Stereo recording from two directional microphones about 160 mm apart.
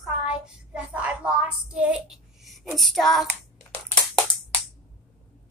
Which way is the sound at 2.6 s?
Centre (ahead or behind).